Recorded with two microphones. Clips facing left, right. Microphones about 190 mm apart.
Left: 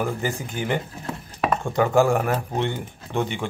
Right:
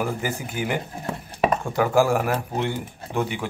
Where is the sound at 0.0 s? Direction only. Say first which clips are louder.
Left 1 dB; 10° right (ahead or behind).